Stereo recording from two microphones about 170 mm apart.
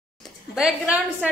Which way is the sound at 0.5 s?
5° right (ahead or behind).